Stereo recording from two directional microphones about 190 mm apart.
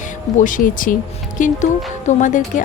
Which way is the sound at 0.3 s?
45° left (ahead or behind).